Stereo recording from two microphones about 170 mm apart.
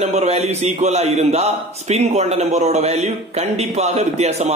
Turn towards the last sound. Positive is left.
turn(degrees=-40)  # may be behind; listen again after turning